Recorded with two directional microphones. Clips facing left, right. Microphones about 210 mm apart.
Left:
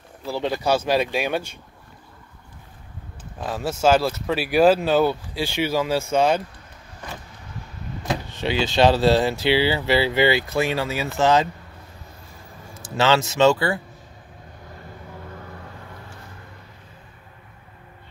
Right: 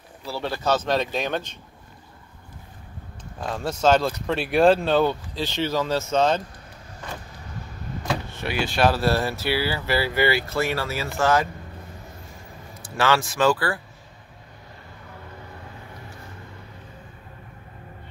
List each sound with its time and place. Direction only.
0.3 s speech: 15° left (ahead or behind)
3.3 s speech: 5° left (ahead or behind)
8.4 s speech: 20° left (ahead or behind)
12.9 s speech: 25° left (ahead or behind)